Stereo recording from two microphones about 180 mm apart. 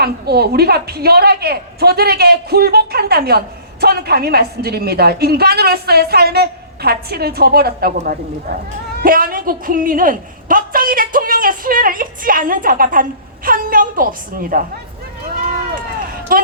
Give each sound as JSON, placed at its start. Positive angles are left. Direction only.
{"t": 0.0, "sound": "a woman's voice", "side_deg": -60}
{"t": 15.7, "sound": "run", "side_deg": -50}